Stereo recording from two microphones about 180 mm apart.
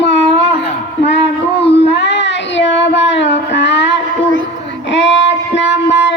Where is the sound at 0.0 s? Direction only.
85° left.